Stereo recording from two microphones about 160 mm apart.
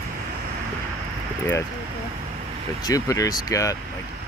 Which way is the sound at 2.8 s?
20° left (ahead or behind).